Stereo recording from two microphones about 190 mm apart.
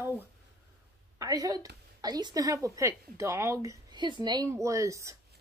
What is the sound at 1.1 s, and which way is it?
Speech, 20° right (ahead or behind).